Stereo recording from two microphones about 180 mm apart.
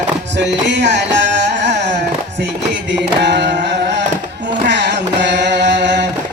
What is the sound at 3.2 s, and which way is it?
Carnatic music, 75° right (ahead or behind).